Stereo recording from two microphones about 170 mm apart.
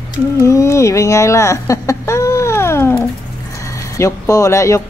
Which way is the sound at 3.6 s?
20° left (ahead or behind).